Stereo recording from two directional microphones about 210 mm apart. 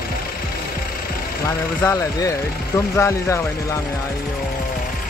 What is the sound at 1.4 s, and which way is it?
Speech, 15° left (ahead or behind).